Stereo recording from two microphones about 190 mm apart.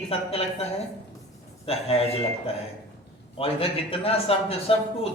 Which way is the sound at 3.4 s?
30° left (ahead or behind).